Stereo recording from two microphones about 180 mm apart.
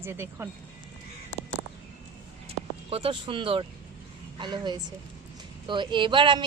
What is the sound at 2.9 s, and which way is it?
Speech, 30° right (ahead or behind).